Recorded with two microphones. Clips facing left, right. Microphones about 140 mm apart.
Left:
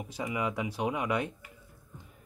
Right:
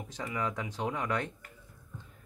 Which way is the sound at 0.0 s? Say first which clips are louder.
Left 2 dB; 15° left (ahead or behind).